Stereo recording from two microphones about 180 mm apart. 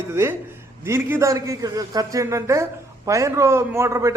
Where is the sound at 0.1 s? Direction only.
15° right (ahead or behind).